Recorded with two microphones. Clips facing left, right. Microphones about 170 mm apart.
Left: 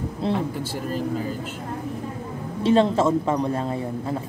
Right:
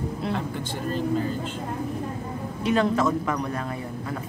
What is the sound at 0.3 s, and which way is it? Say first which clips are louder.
Speech: left 4 dB; 5° left (ahead or behind).